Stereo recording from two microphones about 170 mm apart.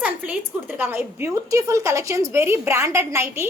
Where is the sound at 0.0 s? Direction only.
10° right (ahead or behind).